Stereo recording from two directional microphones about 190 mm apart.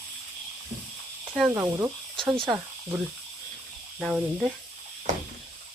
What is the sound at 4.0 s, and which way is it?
Speech, centre (ahead or behind).